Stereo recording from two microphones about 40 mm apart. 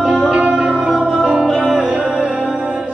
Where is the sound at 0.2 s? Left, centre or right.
Right.